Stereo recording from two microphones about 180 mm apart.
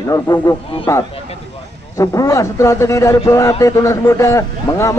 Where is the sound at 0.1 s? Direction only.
20° left (ahead or behind).